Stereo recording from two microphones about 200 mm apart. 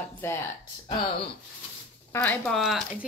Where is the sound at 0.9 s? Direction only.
25° left (ahead or behind).